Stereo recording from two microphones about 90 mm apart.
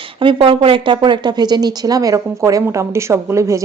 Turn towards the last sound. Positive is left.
turn(degrees=-35)  # may be behind; listen again after turning